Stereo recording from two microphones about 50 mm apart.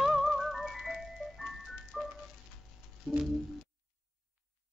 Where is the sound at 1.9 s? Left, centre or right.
Centre.